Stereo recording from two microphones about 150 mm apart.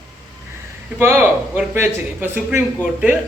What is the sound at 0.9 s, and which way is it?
Speech, 15° right (ahead or behind).